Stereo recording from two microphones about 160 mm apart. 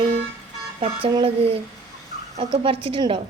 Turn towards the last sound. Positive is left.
turn(degrees=-35)  # may be behind; listen again after turning